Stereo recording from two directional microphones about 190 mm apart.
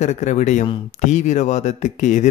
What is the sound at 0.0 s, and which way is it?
Speech, 40° left (ahead or behind).